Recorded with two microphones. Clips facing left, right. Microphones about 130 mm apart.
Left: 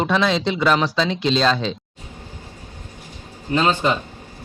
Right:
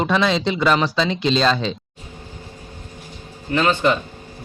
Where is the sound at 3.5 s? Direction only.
20° left (ahead or behind).